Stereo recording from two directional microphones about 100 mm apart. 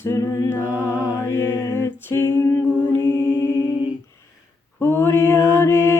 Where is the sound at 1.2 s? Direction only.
25° left (ahead or behind).